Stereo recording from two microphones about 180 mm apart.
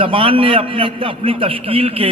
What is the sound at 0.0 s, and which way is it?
A man's voice, 30° right (ahead or behind).